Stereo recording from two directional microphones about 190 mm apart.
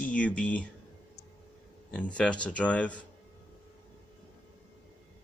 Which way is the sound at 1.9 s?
5° left (ahead or behind).